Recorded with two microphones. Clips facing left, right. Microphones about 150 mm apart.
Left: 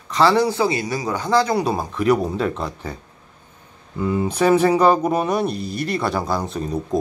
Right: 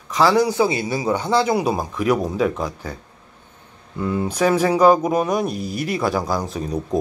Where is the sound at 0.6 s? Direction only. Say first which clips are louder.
Right 1 dB; 20° right (ahead or behind).